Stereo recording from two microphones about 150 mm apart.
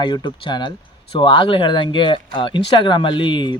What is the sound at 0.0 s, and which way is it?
Speech, 30° left (ahead or behind).